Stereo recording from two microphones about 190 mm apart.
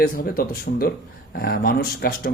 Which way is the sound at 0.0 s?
50° left (ahead or behind).